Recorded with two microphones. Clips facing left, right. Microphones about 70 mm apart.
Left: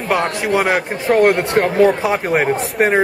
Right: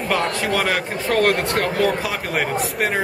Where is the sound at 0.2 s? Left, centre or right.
Left.